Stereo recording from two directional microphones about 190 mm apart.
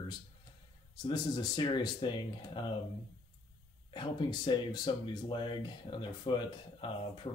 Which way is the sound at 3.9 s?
25° left (ahead or behind).